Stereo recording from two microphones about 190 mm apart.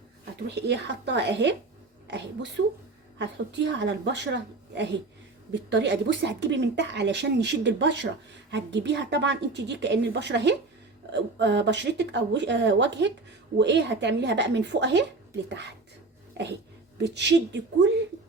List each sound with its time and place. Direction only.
0.4 s a woman's voice: 65° right (ahead or behind)